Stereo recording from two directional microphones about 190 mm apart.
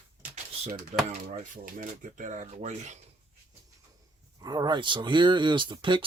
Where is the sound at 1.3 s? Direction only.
40° right (ahead or behind).